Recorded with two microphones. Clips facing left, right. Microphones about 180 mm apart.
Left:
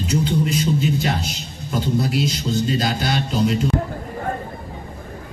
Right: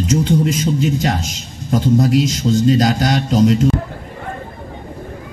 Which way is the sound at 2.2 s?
90° right.